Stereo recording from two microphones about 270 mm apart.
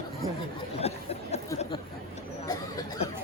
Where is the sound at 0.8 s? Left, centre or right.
Left.